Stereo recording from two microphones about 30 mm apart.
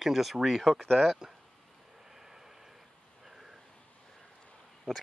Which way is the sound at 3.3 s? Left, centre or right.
Centre.